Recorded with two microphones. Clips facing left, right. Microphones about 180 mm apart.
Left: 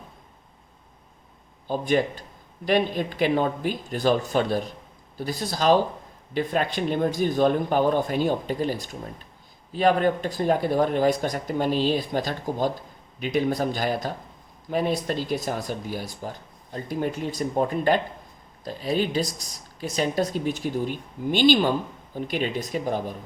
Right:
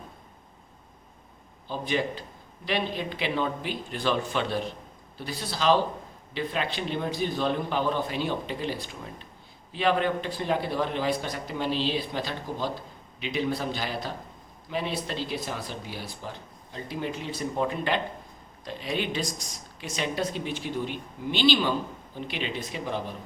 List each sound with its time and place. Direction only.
1.6 s speech: 45° left (ahead or behind)